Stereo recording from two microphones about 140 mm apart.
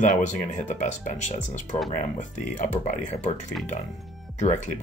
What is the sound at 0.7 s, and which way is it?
Speech, 60° left (ahead or behind).